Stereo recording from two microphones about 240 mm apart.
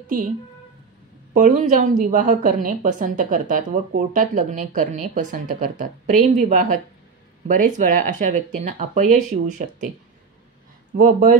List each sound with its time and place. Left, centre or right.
1.3 s a woman's voice: right
11.0 s a woman's voice: right